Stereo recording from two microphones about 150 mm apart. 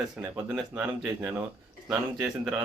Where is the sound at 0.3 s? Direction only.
10° right (ahead or behind).